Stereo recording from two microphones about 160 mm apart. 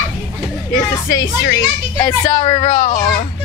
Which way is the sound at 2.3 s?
30° left (ahead or behind).